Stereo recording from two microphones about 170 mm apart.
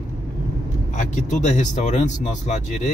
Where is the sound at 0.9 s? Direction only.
45° left (ahead or behind).